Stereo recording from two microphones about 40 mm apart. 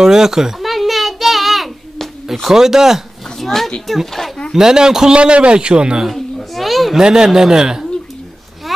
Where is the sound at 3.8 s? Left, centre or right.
Centre.